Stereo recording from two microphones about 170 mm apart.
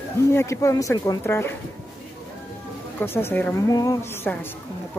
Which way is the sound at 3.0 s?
10° left (ahead or behind).